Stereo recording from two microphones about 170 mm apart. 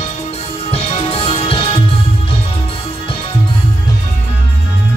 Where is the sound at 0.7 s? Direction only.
35° left (ahead or behind).